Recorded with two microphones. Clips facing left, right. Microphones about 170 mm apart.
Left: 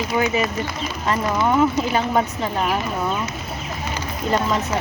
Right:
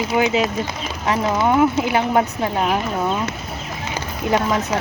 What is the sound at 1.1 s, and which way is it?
Speech, 15° right (ahead or behind).